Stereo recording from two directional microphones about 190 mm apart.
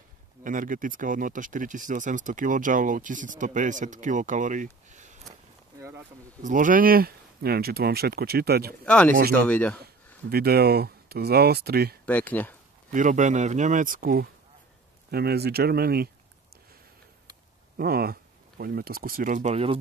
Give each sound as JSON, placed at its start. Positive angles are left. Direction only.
{"t": 0.4, "sound": "speech", "side_deg": -45}
{"t": 5.8, "sound": "a sound", "side_deg": -15}
{"t": 6.4, "sound": "speech", "side_deg": -45}
{"t": 8.8, "sound": "speech", "side_deg": 5}
{"t": 10.3, "sound": "speech", "side_deg": -55}
{"t": 12.1, "sound": "speech", "side_deg": 10}
{"t": 12.9, "sound": "speech", "side_deg": -40}
{"t": 17.7, "sound": "speech", "side_deg": -50}